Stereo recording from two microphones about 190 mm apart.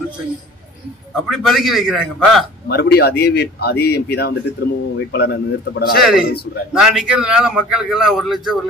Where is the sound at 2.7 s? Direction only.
55° left (ahead or behind).